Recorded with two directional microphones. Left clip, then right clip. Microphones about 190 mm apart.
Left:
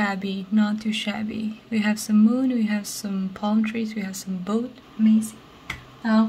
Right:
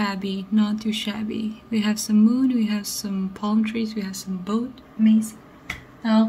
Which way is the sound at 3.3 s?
15° left (ahead or behind).